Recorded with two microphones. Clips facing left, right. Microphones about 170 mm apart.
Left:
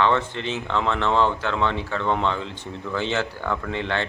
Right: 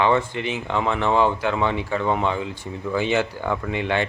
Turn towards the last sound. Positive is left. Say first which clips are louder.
# right 3 dB
turn(degrees=-15)  # may be behind; listen again after turning